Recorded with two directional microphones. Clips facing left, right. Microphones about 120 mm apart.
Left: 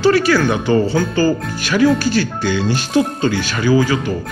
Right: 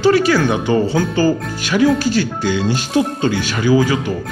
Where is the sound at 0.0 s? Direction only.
20° right (ahead or behind).